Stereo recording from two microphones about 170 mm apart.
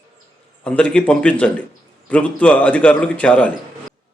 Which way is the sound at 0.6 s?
5° left (ahead or behind).